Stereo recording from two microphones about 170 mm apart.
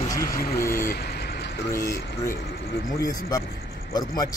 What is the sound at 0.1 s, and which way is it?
Vehicle, 20° left (ahead or behind).